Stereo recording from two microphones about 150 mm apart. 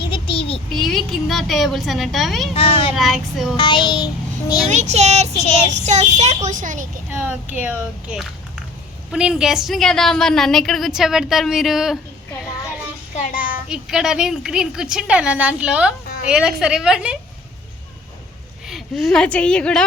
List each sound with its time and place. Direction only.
0.0 s child singing: 35° left (ahead or behind)
0.7 s a woman's voice: centre (ahead or behind)
2.5 s a child's voice: 40° left (ahead or behind)
2.9 s a woman's voice: centre (ahead or behind)
3.6 s child singing: 30° left (ahead or behind)
4.7 s speech: 50° right (ahead or behind)
7.5 s a woman's voice: 10° right (ahead or behind)
13.1 s child singing: 60° left (ahead or behind)
13.7 s a woman's voice: 5° right (ahead or behind)
18.7 s a woman's voice: centre (ahead or behind)